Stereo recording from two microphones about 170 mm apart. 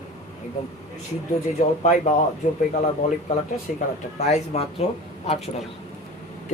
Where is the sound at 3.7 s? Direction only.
50° left (ahead or behind).